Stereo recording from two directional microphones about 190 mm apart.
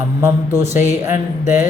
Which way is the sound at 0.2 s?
15° right (ahead or behind).